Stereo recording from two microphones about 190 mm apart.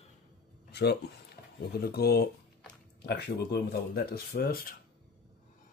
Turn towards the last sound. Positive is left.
turn(degrees=50)  # may be behind; listen again after turning